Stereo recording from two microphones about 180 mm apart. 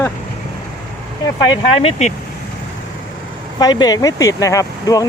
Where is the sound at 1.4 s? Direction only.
30° left (ahead or behind).